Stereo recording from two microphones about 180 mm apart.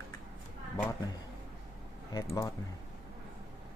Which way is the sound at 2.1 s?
20° left (ahead or behind).